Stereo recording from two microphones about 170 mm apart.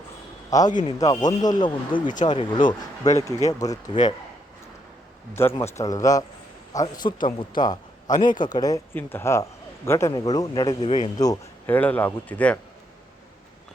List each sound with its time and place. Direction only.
0.5 s a man's voice: 20° left (ahead or behind)
5.3 s a man's voice: 15° left (ahead or behind)
11.7 s a man's voice: 10° left (ahead or behind)